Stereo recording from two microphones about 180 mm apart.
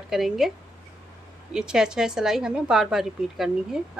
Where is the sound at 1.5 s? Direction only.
5° right (ahead or behind).